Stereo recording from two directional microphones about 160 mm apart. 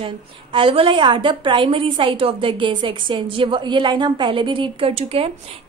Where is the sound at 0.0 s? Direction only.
35° right (ahead or behind).